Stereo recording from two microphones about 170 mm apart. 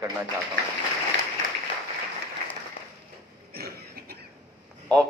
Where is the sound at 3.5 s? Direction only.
65° right (ahead or behind).